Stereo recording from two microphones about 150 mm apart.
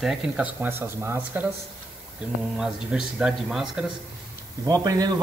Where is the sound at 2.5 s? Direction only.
5° right (ahead or behind).